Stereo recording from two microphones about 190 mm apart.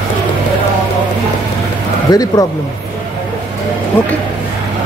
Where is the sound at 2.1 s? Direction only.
20° left (ahead or behind).